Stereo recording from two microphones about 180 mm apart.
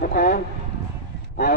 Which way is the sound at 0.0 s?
50° left (ahead or behind).